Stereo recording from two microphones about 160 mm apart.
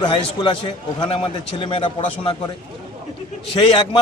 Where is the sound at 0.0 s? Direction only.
30° left (ahead or behind).